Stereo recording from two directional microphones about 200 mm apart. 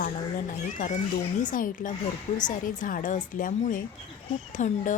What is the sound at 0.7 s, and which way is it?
A woman's voice, 40° left (ahead or behind).